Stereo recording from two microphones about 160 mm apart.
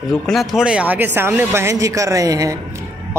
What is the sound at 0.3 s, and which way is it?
Speech, centre (ahead or behind).